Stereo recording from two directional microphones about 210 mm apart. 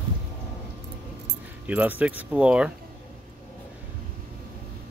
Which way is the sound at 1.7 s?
5° right (ahead or behind).